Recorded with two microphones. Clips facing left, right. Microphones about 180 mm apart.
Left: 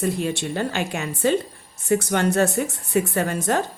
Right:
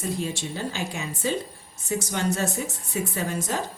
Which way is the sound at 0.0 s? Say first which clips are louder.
Left 5 dB; 65° left (ahead or behind).